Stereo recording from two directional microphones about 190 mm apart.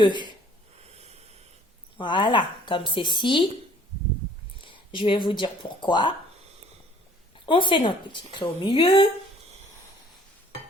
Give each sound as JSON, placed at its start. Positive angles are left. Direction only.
{"t": 0.0, "sound": "a woman's voice", "side_deg": 25}
{"t": 0.8, "sound": "snort", "side_deg": -35}
{"t": 2.0, "sound": "a woman's voice", "side_deg": 25}
{"t": 4.6, "sound": "speech", "side_deg": 25}
{"t": 7.3, "sound": "a woman's voice", "side_deg": 25}